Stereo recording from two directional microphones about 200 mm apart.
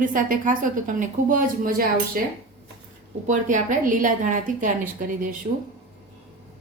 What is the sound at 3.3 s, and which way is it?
A woman's voice, 40° right (ahead or behind).